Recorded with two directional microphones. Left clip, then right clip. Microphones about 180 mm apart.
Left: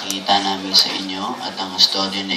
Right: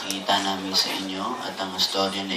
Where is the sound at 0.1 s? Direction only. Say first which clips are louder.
Left 6 dB; 45° left (ahead or behind).